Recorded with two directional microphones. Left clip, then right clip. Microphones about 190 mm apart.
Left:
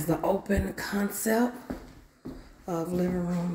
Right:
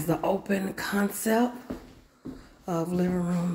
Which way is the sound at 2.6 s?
15° right (ahead or behind).